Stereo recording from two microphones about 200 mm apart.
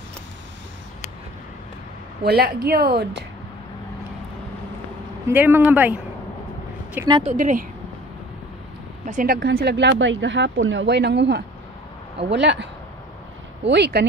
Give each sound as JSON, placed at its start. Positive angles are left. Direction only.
{"t": 2.2, "sound": "a woman's voice", "side_deg": -50}
{"t": 5.3, "sound": "speech", "side_deg": -10}
{"t": 7.0, "sound": "speech", "side_deg": -10}
{"t": 7.3, "sound": "speech", "side_deg": -40}
{"t": 9.0, "sound": "speech", "side_deg": -40}
{"t": 13.7, "sound": "speech", "side_deg": -55}